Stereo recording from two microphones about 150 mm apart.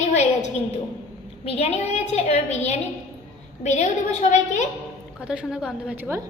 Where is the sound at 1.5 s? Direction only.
45° left (ahead or behind).